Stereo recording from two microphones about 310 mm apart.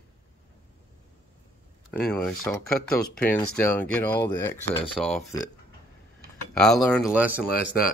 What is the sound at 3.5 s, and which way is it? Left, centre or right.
Speech, centre.